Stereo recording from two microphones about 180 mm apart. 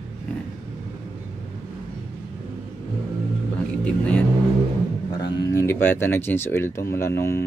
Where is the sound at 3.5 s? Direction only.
5° left (ahead or behind).